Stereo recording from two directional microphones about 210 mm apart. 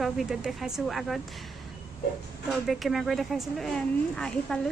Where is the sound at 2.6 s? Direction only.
Centre (ahead or behind).